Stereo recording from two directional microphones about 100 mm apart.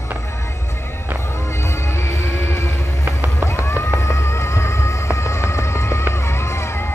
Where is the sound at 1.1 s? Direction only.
30° left (ahead or behind).